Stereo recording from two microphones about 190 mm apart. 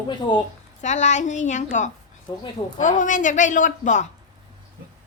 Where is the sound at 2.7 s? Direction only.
40° left (ahead or behind).